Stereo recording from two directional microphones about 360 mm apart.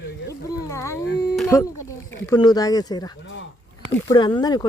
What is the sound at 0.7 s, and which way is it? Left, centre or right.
Speech, centre.